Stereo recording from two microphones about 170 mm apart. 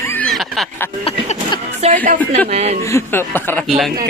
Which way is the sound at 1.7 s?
40° right (ahead or behind).